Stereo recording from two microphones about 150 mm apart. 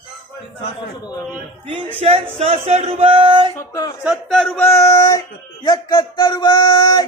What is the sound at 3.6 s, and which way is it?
Speech, 25° left (ahead or behind).